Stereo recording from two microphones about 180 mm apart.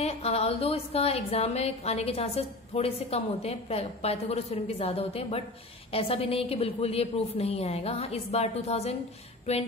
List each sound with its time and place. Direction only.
0.0 s a woman's voice: 35° left (ahead or behind)